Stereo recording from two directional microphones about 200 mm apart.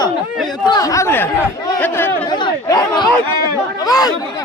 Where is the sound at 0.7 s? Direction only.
20° left (ahead or behind).